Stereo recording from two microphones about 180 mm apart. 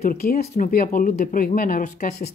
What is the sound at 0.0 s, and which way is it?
Speech, 55° left (ahead or behind).